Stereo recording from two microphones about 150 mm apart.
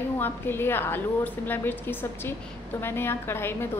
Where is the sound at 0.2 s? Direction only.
15° left (ahead or behind).